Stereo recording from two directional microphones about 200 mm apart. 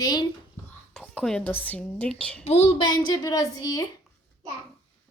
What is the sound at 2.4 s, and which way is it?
Speech, 35° left (ahead or behind).